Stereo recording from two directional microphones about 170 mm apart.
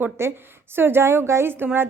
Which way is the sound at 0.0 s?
15° right (ahead or behind).